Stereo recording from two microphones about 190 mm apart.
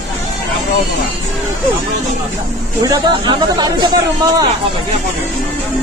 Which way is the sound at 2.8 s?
20° right (ahead or behind).